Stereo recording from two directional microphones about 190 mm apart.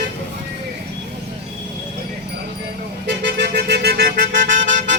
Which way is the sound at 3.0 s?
60° right (ahead or behind).